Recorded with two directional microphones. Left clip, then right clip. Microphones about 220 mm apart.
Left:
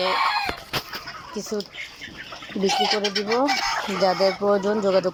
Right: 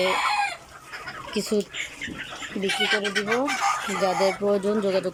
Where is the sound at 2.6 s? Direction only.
30° left (ahead or behind).